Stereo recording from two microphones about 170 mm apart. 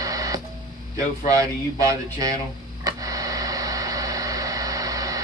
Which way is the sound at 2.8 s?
20° right (ahead or behind).